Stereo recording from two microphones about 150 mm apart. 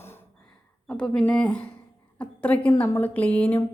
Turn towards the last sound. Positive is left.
turn(degrees=10)  # may be behind; listen again after turning